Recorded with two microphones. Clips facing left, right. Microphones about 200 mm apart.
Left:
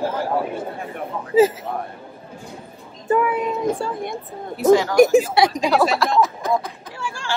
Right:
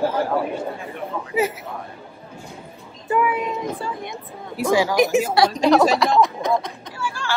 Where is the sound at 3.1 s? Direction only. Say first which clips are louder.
Left 2 dB; 50° left (ahead or behind).